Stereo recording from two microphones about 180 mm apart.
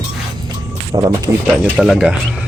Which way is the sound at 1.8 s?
Centre (ahead or behind).